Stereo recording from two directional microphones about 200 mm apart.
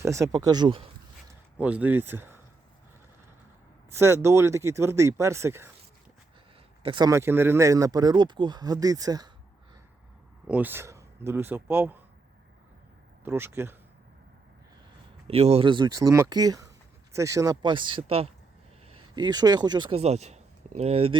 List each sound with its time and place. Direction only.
0.0 s speech: 15° right (ahead or behind)
1.5 s speech: 5° right (ahead or behind)
3.9 s speech: 15° right (ahead or behind)
6.8 s speech: 20° right (ahead or behind)
10.4 s speech: 5° right (ahead or behind)
13.2 s speech: 10° right (ahead or behind)
15.3 s speech: 30° right (ahead or behind)